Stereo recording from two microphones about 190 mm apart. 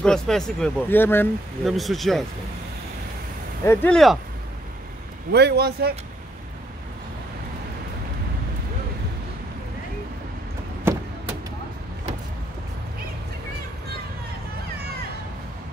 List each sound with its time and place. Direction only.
0.0 s speech: 5° left (ahead or behind)
1.6 s speech: centre (ahead or behind)
3.6 s speech: 10° left (ahead or behind)
5.3 s speech: 60° right (ahead or behind)